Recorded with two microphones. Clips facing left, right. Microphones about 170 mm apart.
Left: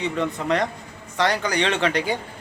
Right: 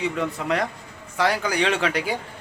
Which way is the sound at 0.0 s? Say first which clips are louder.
Left 1 dB; 5° right (ahead or behind).